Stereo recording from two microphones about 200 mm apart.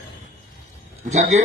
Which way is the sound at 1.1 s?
35° right (ahead or behind).